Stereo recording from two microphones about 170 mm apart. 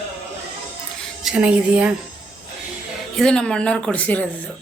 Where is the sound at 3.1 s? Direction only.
5° left (ahead or behind).